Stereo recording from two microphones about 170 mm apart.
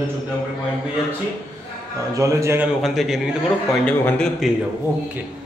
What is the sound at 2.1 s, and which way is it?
Speech, 15° right (ahead or behind).